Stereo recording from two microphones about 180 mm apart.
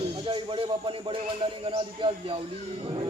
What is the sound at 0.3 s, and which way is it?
Speech, 30° right (ahead or behind).